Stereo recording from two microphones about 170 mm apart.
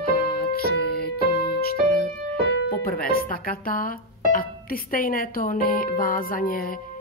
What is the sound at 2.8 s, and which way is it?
Speech, 60° left (ahead or behind).